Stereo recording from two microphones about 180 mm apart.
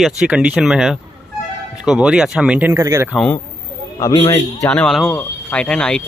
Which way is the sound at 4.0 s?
20° left (ahead or behind).